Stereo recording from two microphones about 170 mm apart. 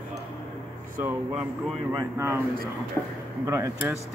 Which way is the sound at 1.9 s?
15° right (ahead or behind).